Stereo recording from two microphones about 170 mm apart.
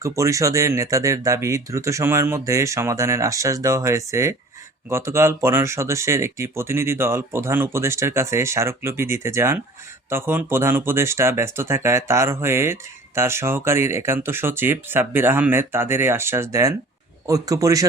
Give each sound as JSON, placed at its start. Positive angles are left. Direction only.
{"t": 0.0, "sound": "speech", "side_deg": -20}